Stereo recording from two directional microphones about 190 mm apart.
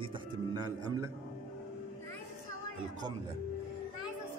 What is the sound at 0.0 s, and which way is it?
Music, 25° right (ahead or behind).